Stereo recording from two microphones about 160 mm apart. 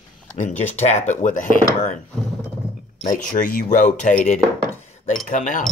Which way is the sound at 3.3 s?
55° left (ahead or behind).